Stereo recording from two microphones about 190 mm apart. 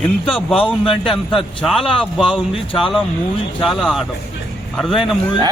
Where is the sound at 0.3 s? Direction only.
Centre (ahead or behind).